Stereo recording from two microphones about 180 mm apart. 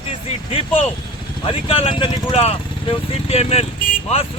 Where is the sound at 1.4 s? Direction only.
30° left (ahead or behind).